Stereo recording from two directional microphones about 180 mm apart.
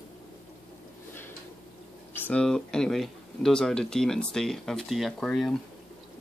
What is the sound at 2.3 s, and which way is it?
Speech, 5° left (ahead or behind).